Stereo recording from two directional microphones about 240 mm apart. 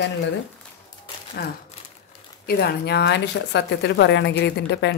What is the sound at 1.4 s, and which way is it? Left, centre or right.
A woman's voice, left.